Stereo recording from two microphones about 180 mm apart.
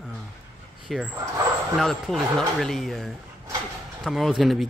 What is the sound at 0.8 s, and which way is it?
Speech, centre (ahead or behind).